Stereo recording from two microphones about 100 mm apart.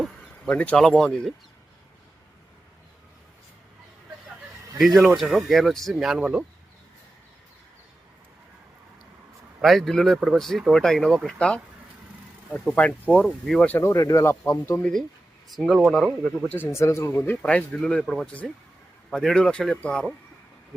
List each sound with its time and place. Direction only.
0.0 s speech: 10° left (ahead or behind)
4.9 s speech: centre (ahead or behind)
9.6 s speech: centre (ahead or behind)
12.6 s speech: 15° left (ahead or behind)
13.2 s speech: centre (ahead or behind)
13.6 s speech: 15° left (ahead or behind)
13.8 s speech: 30° left (ahead or behind)
15.5 s speech: centre (ahead or behind)
16.5 s speech: 25° left (ahead or behind)
17.4 s speech: 10° left (ahead or behind)